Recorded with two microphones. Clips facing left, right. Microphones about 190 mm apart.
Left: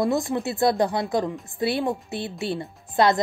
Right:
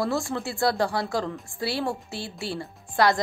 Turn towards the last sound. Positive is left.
turn(degrees=20)  # may be behind; listen again after turning